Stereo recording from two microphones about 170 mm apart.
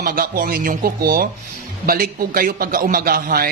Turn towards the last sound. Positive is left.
turn(degrees=-60)  # may be behind; listen again after turning